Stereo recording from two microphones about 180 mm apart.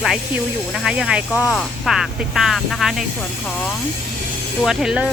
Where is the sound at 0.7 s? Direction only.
Centre (ahead or behind).